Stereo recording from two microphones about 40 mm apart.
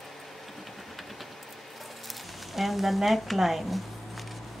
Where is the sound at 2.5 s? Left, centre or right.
Centre.